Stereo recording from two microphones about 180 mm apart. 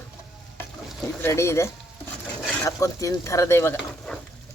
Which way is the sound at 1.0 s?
15° left (ahead or behind).